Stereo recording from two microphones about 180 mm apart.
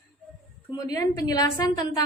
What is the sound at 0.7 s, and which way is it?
Speech, 20° left (ahead or behind).